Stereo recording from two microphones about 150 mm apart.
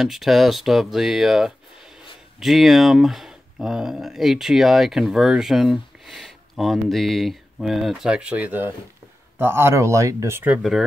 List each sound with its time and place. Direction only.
0.0 s speech: centre (ahead or behind)